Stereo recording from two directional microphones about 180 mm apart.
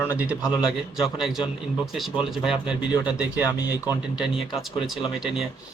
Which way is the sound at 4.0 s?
5° right (ahead or behind).